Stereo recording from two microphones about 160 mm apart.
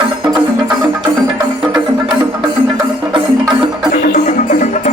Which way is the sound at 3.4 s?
30° right (ahead or behind).